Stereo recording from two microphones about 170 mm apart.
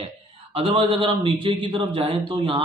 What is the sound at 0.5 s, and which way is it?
A man's voice, 35° right (ahead or behind).